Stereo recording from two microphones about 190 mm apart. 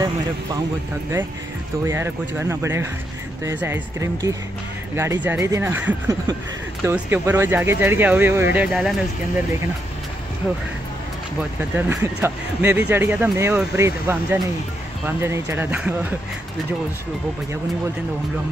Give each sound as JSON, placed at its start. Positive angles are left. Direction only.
{"t": 1.9, "sound": "speech", "side_deg": -10}
{"t": 11.7, "sound": "speech", "side_deg": -10}